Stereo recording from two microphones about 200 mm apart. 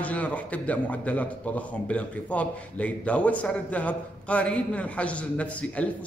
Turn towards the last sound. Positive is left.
turn(degrees=5)  # may be behind; listen again after turning